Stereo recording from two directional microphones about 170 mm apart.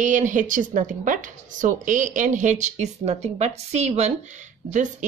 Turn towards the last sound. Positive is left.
turn(degrees=-45)  # may be behind; listen again after turning